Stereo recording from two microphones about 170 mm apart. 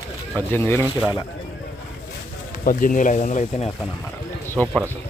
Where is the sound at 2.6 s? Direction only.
55° left (ahead or behind).